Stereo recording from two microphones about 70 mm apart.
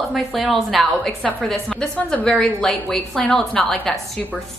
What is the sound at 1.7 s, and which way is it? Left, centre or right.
A woman's voice, centre.